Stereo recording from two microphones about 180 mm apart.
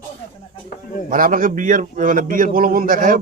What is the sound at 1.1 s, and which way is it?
A man's voice, 50° right (ahead or behind).